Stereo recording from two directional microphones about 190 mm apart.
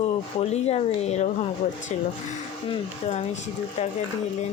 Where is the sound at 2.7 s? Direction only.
30° left (ahead or behind).